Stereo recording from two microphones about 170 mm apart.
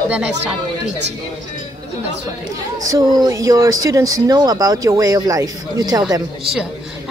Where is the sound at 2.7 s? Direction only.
20° right (ahead or behind).